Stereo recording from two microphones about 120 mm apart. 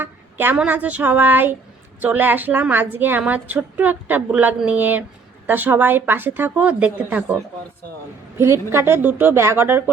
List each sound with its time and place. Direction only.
0.0 s a sound: 15° right (ahead or behind)
0.5 s a woman's voice: 10° right (ahead or behind)
8.4 s a woman's voice: 20° right (ahead or behind)